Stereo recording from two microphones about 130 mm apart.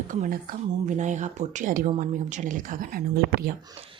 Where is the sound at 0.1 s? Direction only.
90° right.